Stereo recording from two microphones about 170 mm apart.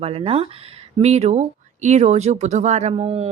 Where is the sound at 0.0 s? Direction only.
35° right (ahead or behind).